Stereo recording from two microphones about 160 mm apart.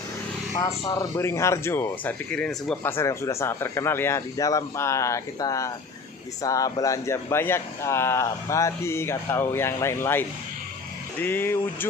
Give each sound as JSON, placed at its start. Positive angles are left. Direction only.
{"t": 0.6, "sound": "speech", "side_deg": 20}
{"t": 2.8, "sound": "speech", "side_deg": 15}